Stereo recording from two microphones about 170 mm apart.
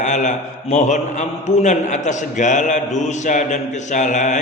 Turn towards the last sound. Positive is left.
turn(degrees=45)  # may be behind; listen again after turning